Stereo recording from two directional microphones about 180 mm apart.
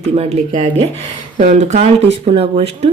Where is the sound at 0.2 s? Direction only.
35° right (ahead or behind).